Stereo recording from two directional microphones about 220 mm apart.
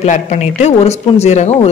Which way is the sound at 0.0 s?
30° left (ahead or behind).